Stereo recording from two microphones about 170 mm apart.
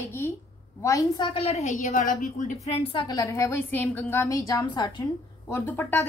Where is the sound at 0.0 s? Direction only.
15° left (ahead or behind).